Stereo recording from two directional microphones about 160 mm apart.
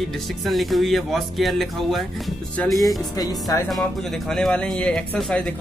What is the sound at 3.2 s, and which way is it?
Speech, 25° left (ahead or behind).